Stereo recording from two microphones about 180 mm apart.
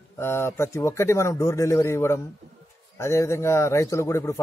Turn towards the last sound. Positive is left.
turn(degrees=15)  # may be behind; listen again after turning